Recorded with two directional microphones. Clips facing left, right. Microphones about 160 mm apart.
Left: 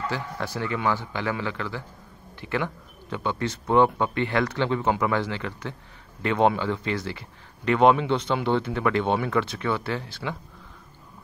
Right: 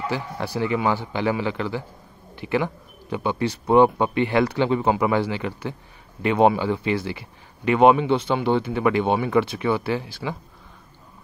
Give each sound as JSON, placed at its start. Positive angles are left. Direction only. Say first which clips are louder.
{"t": 0.1, "sound": "speech", "louder": "right 3 dB", "side_deg": -15}